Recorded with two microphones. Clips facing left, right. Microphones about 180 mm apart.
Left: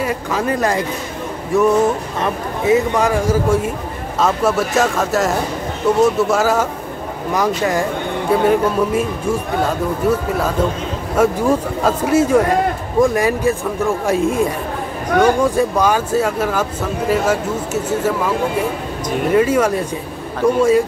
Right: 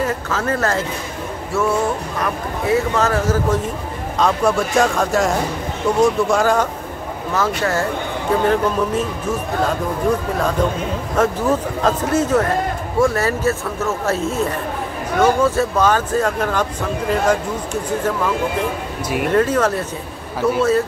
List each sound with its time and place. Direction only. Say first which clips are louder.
0.0 s speech: left 1 dB; 15° left (ahead or behind)